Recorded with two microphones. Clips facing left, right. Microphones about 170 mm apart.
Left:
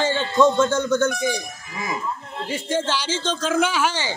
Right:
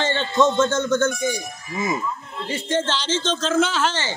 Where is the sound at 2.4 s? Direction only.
10° left (ahead or behind).